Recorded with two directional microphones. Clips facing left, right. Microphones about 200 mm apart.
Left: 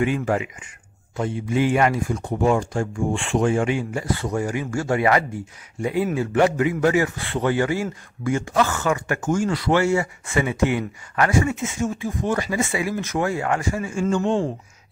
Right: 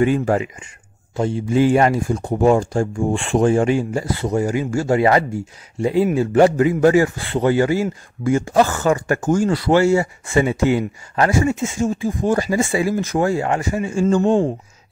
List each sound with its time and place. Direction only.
0.0 s a man's voice: 35° right (ahead or behind)